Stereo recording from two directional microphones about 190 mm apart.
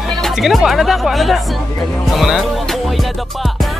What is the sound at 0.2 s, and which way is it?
Speech, centre (ahead or behind).